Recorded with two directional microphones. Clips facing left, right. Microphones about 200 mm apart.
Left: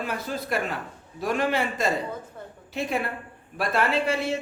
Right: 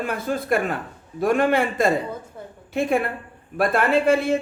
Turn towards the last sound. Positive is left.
turn(degrees=-50)  # may be behind; listen again after turning